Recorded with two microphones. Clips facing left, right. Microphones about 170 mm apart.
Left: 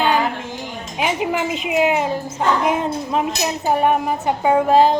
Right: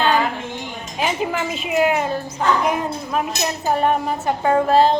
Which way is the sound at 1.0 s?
15° left (ahead or behind).